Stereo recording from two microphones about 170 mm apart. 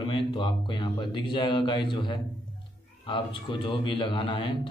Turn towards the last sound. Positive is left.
turn(degrees=30)  # may be behind; listen again after turning